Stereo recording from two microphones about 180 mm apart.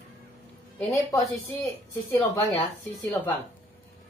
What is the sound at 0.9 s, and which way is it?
Speech, 20° left (ahead or behind).